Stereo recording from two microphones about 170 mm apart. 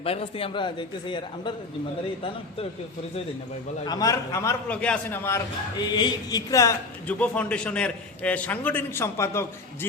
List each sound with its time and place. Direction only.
0.0 s a man's voice: 35° left (ahead or behind)
3.8 s a man's voice: 20° left (ahead or behind)
4.7 s a man's voice: 5° left (ahead or behind)
5.9 s a man's voice: 25° left (ahead or behind)